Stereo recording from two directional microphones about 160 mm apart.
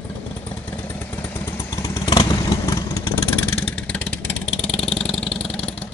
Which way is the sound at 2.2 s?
20° left (ahead or behind).